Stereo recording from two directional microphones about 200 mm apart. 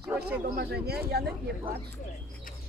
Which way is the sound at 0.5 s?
55° right (ahead or behind).